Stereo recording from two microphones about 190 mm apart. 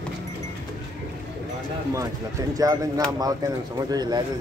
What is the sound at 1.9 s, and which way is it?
A man's voice, 15° right (ahead or behind).